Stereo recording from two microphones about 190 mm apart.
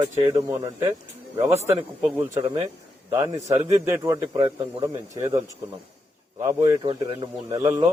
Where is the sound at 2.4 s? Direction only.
30° right (ahead or behind).